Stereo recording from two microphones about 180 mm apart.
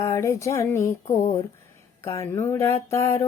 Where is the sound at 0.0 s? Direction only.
15° left (ahead or behind).